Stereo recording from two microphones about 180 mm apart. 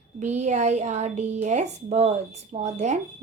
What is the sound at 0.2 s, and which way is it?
A woman's voice, 40° right (ahead or behind).